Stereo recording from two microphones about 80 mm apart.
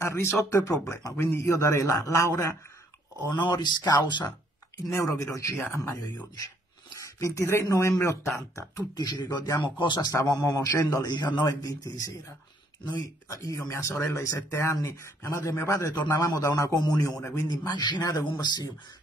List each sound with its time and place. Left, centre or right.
0.0 s a man's voice: left
3.3 s speech: left
4.9 s a man's voice: left
7.0 s speech: left
8.9 s speech: left
9.6 s speech: left
10.2 s a man's voice: left
11.4 s a man's voice: left
13.3 s speech: left
16.1 s a man's voice: left